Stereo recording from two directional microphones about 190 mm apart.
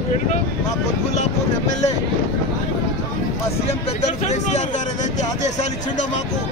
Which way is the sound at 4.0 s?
35° left (ahead or behind).